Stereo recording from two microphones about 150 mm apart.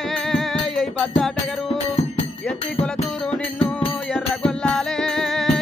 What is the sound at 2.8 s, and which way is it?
Music, 5° left (ahead or behind).